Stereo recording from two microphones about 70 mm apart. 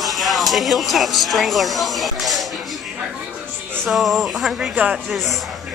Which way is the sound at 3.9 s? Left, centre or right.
Centre.